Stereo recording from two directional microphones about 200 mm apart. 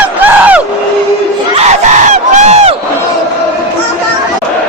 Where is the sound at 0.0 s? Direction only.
10° right (ahead or behind).